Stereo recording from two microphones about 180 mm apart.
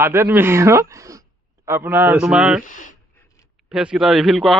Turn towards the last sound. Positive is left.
turn(degrees=0)  # may be behind; listen again after turning